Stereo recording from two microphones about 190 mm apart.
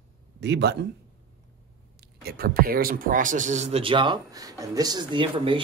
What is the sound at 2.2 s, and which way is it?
Speech, 50° right (ahead or behind).